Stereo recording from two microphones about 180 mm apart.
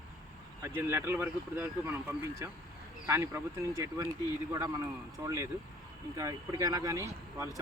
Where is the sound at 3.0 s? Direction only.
15° right (ahead or behind).